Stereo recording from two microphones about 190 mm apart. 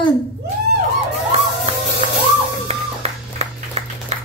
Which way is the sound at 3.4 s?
35° right (ahead or behind).